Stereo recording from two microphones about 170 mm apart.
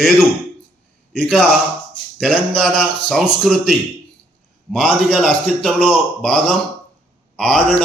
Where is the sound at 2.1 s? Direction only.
Centre (ahead or behind).